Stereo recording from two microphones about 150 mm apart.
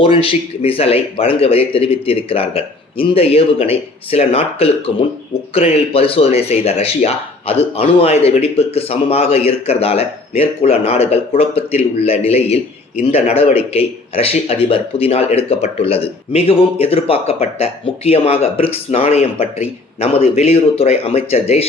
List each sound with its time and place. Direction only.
0.0 s speech: 35° left (ahead or behind)